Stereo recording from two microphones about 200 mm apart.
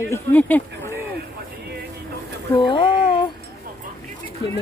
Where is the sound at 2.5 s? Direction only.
25° left (ahead or behind).